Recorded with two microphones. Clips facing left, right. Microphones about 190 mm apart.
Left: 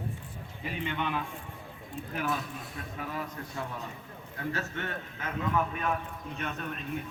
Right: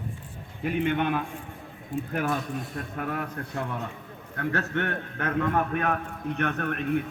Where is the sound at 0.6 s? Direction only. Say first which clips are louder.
Right 9 dB; 60° right (ahead or behind).